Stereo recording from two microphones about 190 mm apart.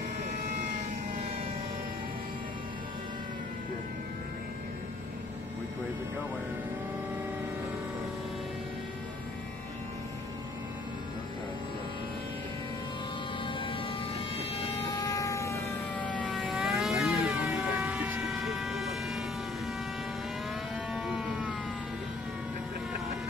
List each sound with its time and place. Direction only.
13.5 s vehicle: 25° left (ahead or behind)
14.6 s siren: 20° left (ahead or behind); by 19.2 s centre (ahead or behind)
20.9 s a sound: centre (ahead or behind)